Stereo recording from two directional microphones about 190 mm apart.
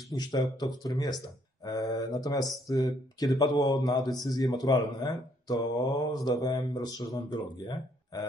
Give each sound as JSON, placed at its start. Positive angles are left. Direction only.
{"t": 0.1, "sound": "speech", "side_deg": 20}